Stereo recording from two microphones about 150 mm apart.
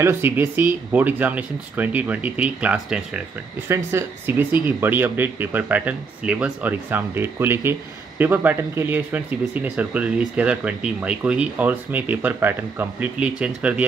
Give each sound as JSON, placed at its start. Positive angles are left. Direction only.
{"t": 0.0, "sound": "speech", "side_deg": -15}
{"t": 3.6, "sound": "speech", "side_deg": -15}